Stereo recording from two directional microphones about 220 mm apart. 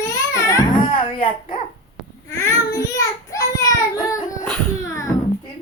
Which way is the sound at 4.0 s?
15° left (ahead or behind).